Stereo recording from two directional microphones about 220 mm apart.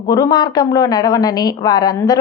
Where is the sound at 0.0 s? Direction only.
15° left (ahead or behind).